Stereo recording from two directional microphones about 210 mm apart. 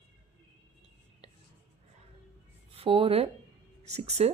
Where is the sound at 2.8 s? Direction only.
25° right (ahead or behind).